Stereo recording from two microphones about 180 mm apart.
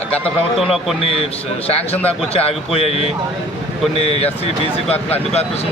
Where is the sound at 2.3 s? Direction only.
35° left (ahead or behind).